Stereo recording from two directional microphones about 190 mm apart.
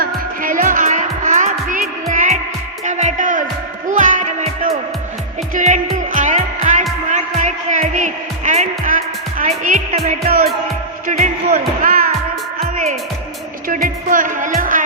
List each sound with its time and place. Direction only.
0.0 s music: 45° right (ahead or behind)
9.9 s music: 35° right (ahead or behind)
10.2 s music: 50° right (ahead or behind)
13.7 s music: 50° right (ahead or behind)